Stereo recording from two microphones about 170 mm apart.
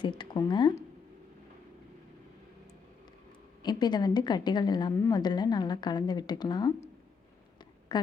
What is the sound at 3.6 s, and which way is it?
Speech, 25° left (ahead or behind).